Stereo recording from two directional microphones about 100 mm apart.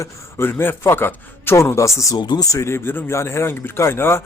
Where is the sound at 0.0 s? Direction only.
25° left (ahead or behind).